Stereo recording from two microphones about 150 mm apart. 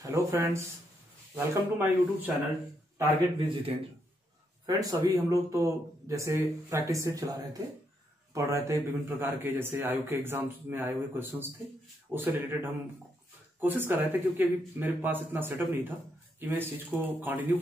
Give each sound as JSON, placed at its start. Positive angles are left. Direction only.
{"t": 0.0, "sound": "a man's voice", "side_deg": -20}
{"t": 3.3, "sound": "a man's voice", "side_deg": -35}
{"t": 4.6, "sound": "a man's voice", "side_deg": -20}
{"t": 13.6, "sound": "a man's voice", "side_deg": -15}